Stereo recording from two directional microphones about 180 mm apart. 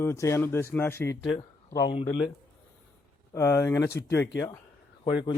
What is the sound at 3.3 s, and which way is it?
Speech, 15° left (ahead or behind).